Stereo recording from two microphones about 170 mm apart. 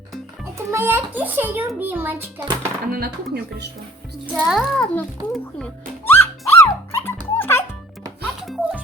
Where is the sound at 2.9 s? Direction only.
65° right (ahead or behind).